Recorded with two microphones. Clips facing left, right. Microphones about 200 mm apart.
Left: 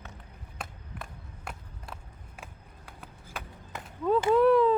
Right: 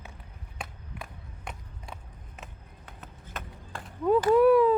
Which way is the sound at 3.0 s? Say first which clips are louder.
Right 1 dB; 10° left (ahead or behind).